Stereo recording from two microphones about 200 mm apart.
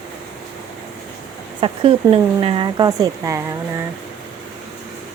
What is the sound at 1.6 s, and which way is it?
Speech, 30° right (ahead or behind).